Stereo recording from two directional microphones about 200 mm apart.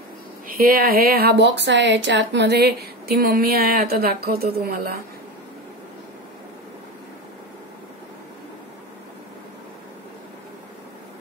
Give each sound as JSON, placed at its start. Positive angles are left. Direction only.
{"t": 0.5, "sound": "speech", "side_deg": -45}